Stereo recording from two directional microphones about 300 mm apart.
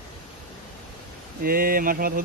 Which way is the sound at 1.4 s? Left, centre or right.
Right.